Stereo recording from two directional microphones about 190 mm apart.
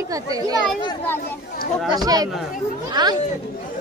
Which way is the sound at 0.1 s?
20° right (ahead or behind).